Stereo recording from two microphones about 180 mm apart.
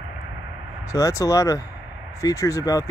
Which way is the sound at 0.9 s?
20° left (ahead or behind).